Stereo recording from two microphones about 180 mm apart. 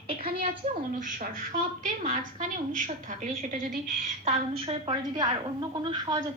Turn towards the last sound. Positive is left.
turn(degrees=-20)  # may be behind; listen again after turning